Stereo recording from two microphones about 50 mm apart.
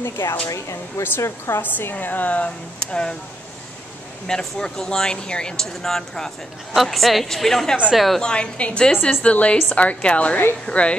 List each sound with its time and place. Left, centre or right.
0.0 s speech: left
0.5 s speech: left
1.5 s a woman's voice: left; by 3.2 s centre
4.3 s speech: centre
5.7 s a woman's voice: centre
8.2 s a woman's voice: centre